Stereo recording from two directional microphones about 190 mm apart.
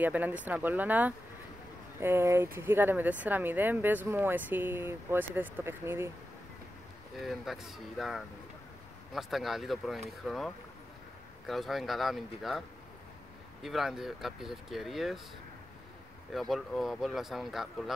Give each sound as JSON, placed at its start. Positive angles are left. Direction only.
{"t": 0.0, "sound": "speech", "side_deg": -10}
{"t": 7.2, "sound": "speech", "side_deg": 0}
{"t": 16.3, "sound": "speech", "side_deg": 0}